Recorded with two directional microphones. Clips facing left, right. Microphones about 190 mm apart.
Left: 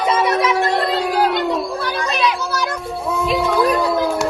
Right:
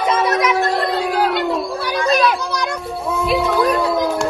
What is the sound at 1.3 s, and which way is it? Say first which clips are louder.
Children playing: even; centre (ahead or behind).